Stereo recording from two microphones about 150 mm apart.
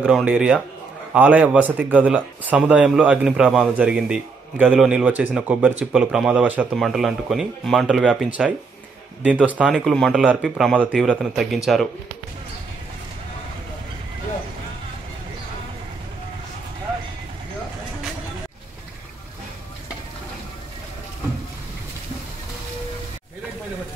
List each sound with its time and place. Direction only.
0.0 s speech: 5° right (ahead or behind)